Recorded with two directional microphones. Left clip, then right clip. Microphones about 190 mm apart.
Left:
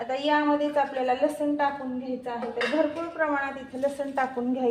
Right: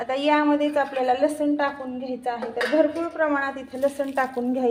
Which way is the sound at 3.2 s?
30° right (ahead or behind).